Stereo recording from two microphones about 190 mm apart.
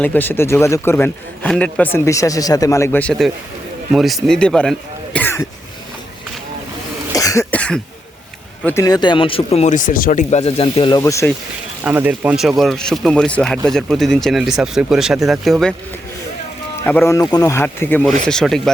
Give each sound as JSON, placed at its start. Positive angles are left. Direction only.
{"t": 0.0, "sound": "a man's voice", "side_deg": 10}
{"t": 7.1, "sound": "cough", "side_deg": 20}
{"t": 7.5, "sound": "cough", "side_deg": 5}
{"t": 8.6, "sound": "speech", "side_deg": 15}
{"t": 11.0, "sound": "a man's voice", "side_deg": 15}
{"t": 11.8, "sound": "speech", "side_deg": -10}
{"t": 16.8, "sound": "a man's voice", "side_deg": 10}